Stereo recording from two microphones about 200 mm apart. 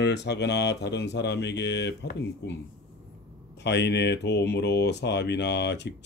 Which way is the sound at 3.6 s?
60° left (ahead or behind).